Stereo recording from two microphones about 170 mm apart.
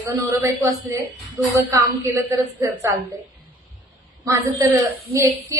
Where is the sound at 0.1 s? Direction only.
15° right (ahead or behind).